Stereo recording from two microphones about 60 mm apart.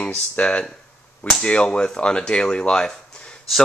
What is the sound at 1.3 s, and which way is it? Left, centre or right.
Whip, centre.